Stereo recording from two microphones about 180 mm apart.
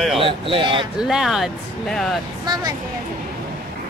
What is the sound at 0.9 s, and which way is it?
Speech, 5° right (ahead or behind).